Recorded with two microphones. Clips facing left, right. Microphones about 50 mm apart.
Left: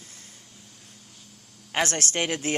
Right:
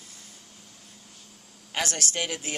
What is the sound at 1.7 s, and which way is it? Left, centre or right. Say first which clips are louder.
Speech: left 4 dB; left.